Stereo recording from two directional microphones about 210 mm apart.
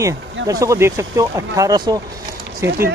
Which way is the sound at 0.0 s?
15° right (ahead or behind).